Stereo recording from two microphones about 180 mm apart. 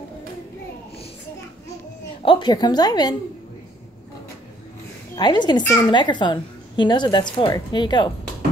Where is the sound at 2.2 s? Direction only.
30° left (ahead or behind).